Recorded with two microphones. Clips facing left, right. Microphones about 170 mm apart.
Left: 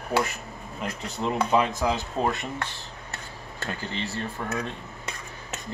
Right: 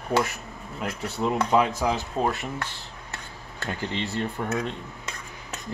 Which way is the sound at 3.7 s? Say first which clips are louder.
Right 3 dB; 15° right (ahead or behind).